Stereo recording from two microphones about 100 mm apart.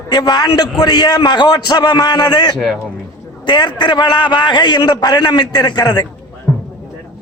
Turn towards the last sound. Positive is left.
turn(degrees=25)  # may be behind; listen again after turning